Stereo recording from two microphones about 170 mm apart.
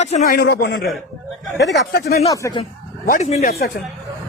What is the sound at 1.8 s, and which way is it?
Speech, 70° left (ahead or behind).